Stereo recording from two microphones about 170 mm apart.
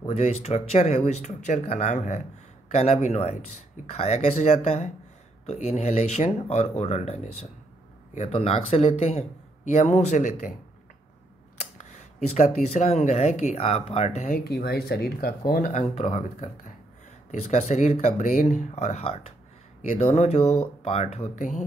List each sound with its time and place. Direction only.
0.0 s a man's voice: 35° left (ahead or behind)
11.8 s a man's voice: 45° left (ahead or behind)